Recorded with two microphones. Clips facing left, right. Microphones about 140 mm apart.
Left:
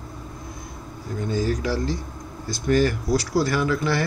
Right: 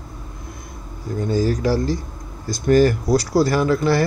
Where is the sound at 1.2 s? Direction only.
40° right (ahead or behind).